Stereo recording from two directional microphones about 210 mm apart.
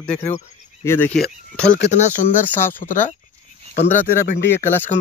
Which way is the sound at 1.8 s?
35° left (ahead or behind).